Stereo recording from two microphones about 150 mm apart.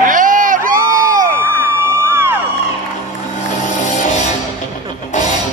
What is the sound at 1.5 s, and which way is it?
Music, 15° right (ahead or behind).